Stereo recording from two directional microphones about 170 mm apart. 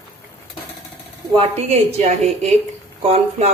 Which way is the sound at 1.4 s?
40° right (ahead or behind).